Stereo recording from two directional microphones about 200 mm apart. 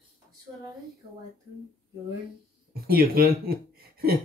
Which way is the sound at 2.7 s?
50° right (ahead or behind).